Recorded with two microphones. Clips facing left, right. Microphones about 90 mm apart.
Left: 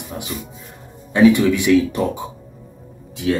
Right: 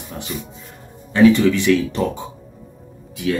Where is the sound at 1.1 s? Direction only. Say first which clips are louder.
Even; 15° left (ahead or behind).